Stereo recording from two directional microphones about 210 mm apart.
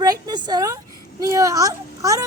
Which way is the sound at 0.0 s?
20° right (ahead or behind).